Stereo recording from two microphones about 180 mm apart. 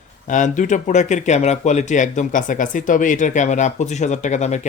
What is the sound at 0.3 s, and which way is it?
Speech, 45° left (ahead or behind).